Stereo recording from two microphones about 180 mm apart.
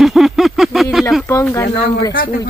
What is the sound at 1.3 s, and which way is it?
Speech, 15° left (ahead or behind).